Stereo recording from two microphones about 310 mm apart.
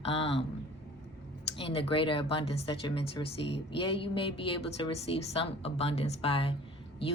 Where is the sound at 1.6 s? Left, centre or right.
Centre.